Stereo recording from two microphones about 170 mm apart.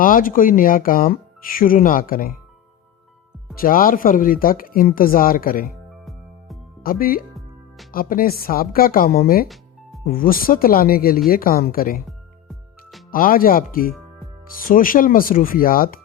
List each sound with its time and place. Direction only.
0.0 s speech: 55° left (ahead or behind)
3.6 s speech: 55° left (ahead or behind)
6.8 s speech: 60° left (ahead or behind)
13.1 s speech: 55° left (ahead or behind)